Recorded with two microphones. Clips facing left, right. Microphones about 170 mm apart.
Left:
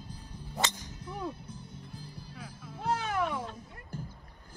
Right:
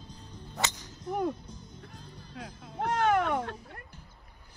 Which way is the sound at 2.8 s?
60° right (ahead or behind).